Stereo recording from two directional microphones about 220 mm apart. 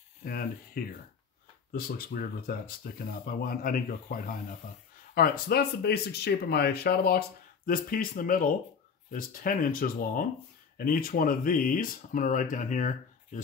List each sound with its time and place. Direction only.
0.2 s speech: 40° left (ahead or behind)